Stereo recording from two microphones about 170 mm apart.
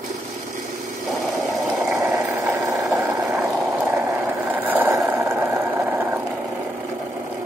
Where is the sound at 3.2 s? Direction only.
Centre (ahead or behind).